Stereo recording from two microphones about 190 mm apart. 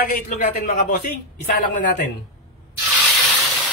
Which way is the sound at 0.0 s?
45° left (ahead or behind).